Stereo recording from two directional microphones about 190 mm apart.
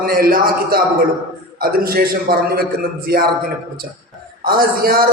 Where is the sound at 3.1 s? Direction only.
55° right (ahead or behind).